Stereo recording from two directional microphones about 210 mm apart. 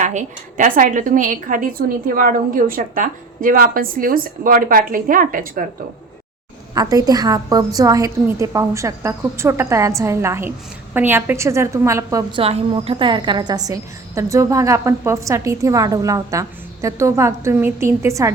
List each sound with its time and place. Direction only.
0.0 s a woman's voice: 35° right (ahead or behind)
6.7 s a woman's voice: 15° right (ahead or behind)
12.4 s a woman's voice: 25° right (ahead or behind)